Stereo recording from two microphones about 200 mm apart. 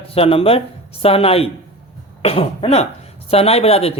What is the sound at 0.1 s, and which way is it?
Speech, 30° left (ahead or behind).